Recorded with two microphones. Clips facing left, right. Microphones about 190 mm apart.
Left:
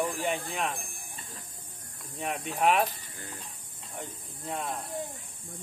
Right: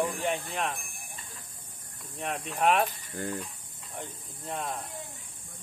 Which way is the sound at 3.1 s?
65° right (ahead or behind).